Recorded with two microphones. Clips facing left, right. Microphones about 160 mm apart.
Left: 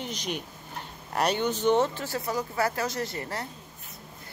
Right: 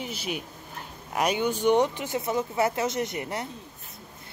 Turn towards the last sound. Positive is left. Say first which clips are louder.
# right 3 dB
turn(degrees=-20)  # may be behind; listen again after turning